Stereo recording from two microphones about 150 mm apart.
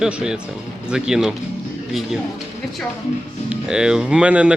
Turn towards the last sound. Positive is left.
turn(degrees=-10)  # may be behind; listen again after turning